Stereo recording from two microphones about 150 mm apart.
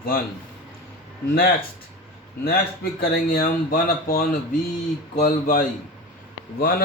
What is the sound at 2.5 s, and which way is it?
Speech, 90° left.